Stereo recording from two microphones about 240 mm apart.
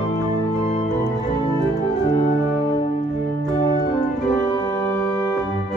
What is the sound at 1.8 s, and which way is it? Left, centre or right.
Organ, centre.